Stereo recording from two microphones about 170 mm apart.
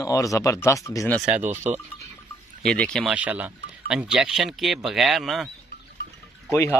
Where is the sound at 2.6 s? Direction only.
5° left (ahead or behind).